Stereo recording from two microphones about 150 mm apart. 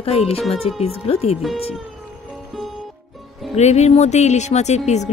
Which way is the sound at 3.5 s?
50° left (ahead or behind).